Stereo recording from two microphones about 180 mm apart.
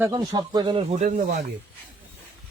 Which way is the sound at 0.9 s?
40° right (ahead or behind).